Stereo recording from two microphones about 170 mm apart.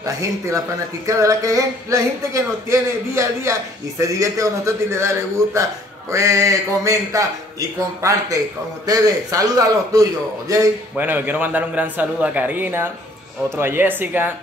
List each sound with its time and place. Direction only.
0.0 s a man's voice: 20° right (ahead or behind)